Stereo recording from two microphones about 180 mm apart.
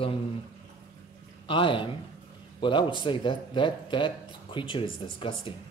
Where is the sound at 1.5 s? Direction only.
30° left (ahead or behind).